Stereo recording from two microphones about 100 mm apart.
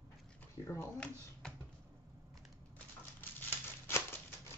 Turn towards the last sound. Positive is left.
turn(degrees=25)  # may be behind; listen again after turning